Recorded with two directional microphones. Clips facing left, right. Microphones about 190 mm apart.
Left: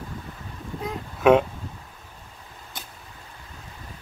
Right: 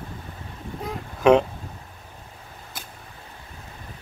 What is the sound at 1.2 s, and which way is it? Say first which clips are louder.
Speech: right 1 dB; 5° left (ahead or behind).